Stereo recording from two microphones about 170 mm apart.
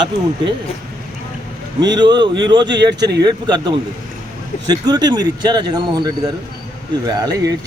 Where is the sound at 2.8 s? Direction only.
90° right.